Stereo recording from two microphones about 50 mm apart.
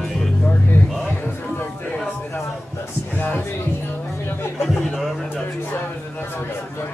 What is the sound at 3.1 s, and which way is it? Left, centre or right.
Music, left.